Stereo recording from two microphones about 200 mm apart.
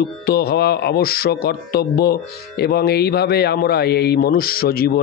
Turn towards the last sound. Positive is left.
turn(degrees=50)  # may be behind; listen again after turning